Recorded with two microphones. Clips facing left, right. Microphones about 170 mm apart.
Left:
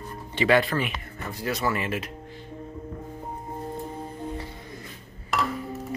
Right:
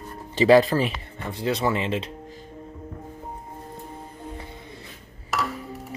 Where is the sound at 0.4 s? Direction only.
35° right (ahead or behind).